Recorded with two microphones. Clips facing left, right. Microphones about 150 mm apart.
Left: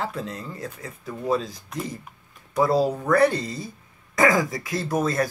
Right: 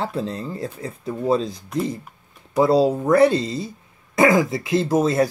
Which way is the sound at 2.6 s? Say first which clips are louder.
Right 4 dB; 25° right (ahead or behind).